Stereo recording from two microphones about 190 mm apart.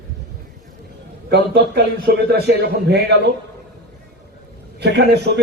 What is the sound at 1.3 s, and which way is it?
A man's voice, 60° right (ahead or behind).